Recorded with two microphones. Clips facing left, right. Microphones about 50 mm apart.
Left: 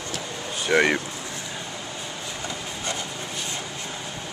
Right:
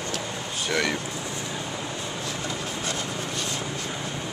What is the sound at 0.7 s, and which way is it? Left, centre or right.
Speech, left.